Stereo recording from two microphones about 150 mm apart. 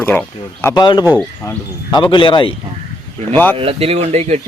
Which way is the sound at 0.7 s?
30° left (ahead or behind).